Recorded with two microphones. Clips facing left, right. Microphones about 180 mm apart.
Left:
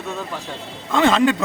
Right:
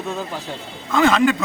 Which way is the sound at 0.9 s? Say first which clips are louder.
Even; 30° left (ahead or behind).